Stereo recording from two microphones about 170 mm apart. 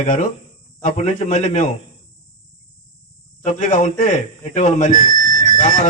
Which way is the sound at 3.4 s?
45° left (ahead or behind).